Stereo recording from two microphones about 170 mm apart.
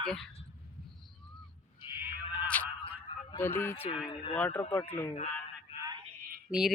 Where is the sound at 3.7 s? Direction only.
35° left (ahead or behind).